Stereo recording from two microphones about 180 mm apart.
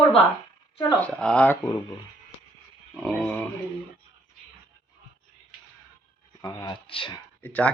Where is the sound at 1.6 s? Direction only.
25° left (ahead or behind).